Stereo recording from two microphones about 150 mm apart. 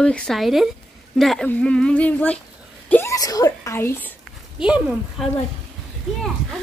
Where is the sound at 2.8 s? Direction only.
10° left (ahead or behind).